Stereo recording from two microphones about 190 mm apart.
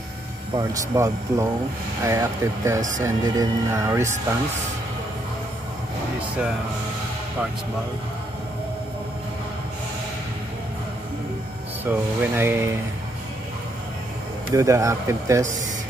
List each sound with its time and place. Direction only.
0.6 s speech: 15° right (ahead or behind)
11.8 s speech: 10° right (ahead or behind)
14.5 s speech: 15° right (ahead or behind)